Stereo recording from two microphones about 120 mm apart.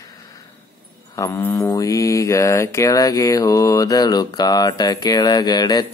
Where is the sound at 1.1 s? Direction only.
25° left (ahead or behind).